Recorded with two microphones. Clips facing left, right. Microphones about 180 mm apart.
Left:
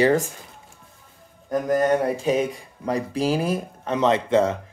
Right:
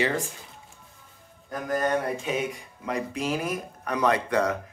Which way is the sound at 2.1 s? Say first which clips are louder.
Left 7 dB; 35° left (ahead or behind).